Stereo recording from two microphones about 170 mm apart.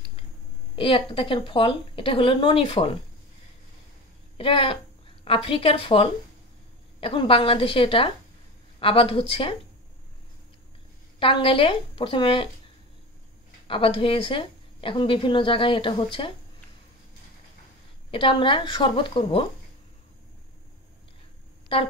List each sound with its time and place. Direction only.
0.7 s a woman's voice: 30° left (ahead or behind)
4.4 s a woman's voice: 30° left (ahead or behind)
11.1 s a woman's voice: 30° left (ahead or behind)
13.7 s a woman's voice: 30° left (ahead or behind)
18.1 s a woman's voice: 30° left (ahead or behind)
21.7 s a woman's voice: 35° left (ahead or behind)